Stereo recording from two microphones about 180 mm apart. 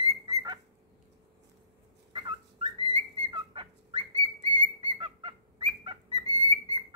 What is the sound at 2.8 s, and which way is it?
Whistling, 25° right (ahead or behind).